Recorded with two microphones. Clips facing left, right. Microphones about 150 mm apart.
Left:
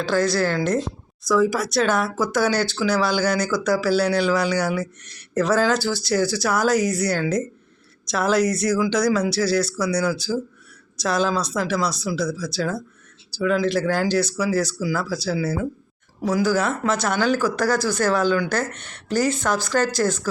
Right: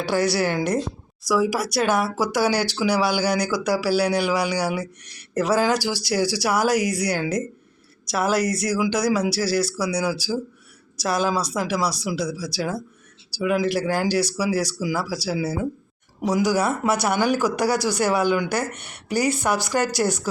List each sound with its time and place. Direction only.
0.0 s speech: 15° right (ahead or behind)